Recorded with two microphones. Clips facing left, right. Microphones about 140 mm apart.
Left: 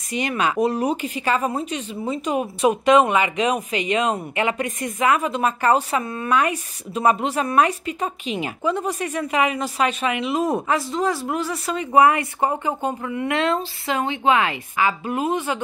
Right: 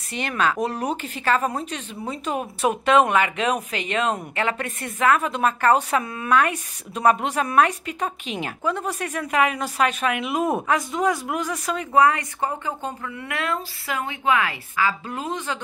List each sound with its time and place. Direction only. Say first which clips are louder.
0.1 s speech: left 2 dB; 10° left (ahead or behind)
11.9 s speech: left 3 dB; 20° left (ahead or behind)